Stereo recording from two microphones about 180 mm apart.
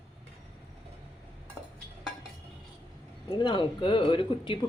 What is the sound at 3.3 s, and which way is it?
Speech, 25° left (ahead or behind).